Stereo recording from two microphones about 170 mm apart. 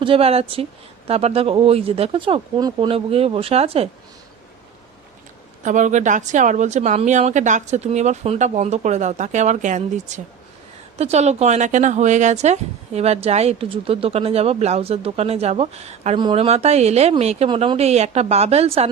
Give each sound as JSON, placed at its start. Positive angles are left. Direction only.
{"t": 0.0, "sound": "speech", "side_deg": -35}
{"t": 5.6, "sound": "speech", "side_deg": -45}